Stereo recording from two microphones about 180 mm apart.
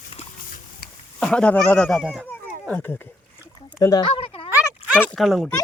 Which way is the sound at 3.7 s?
20° left (ahead or behind).